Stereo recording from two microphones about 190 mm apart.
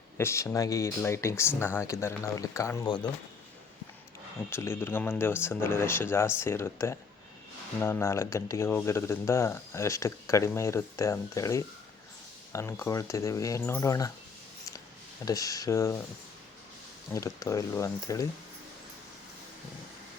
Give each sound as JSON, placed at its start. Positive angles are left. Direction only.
{"t": 0.2, "sound": "speech", "side_deg": 15}
{"t": 4.4, "sound": "speech", "side_deg": 15}
{"t": 15.2, "sound": "speech", "side_deg": 20}
{"t": 17.1, "sound": "speech", "side_deg": 15}